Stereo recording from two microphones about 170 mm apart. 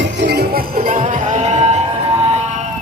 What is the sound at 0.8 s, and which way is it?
Music, 40° right (ahead or behind).